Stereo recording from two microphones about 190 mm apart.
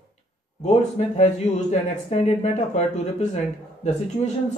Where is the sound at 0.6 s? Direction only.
35° left (ahead or behind).